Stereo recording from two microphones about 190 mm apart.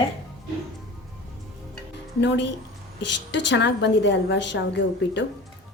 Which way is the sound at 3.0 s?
70° left (ahead or behind).